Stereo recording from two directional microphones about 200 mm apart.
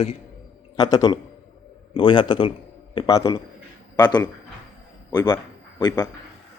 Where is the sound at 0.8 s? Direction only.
20° left (ahead or behind).